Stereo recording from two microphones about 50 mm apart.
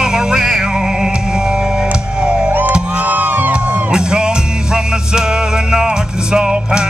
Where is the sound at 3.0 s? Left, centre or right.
Right.